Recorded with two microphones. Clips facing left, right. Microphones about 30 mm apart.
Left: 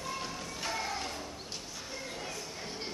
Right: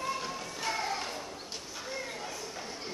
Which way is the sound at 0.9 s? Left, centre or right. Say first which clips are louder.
Right 2 dB; centre.